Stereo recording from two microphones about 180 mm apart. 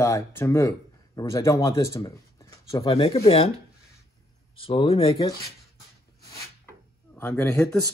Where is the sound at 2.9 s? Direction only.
30° left (ahead or behind).